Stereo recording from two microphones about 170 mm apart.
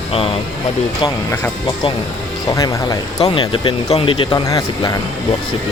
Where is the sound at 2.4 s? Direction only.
20° left (ahead or behind).